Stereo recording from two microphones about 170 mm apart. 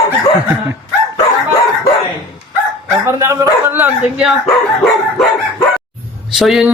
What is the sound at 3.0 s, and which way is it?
Speech, 15° right (ahead or behind).